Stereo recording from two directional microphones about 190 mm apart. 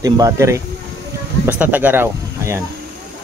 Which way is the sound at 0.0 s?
15° right (ahead or behind).